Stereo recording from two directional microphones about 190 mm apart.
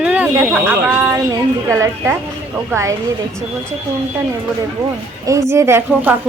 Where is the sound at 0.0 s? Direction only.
10° right (ahead or behind).